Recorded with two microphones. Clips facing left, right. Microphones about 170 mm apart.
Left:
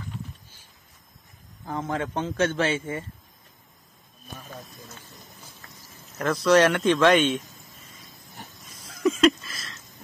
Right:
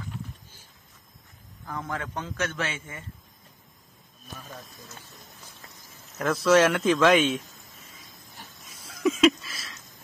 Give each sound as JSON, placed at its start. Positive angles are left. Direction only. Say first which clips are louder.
{"t": 1.7, "sound": "a man's voice", "louder": "left 5 dB", "side_deg": 20}
{"t": 6.1, "sound": "a man's voice", "louder": "left 1 dB", "side_deg": 0}
{"t": 8.8, "sound": "a sound", "louder": "left 1 dB", "side_deg": 0}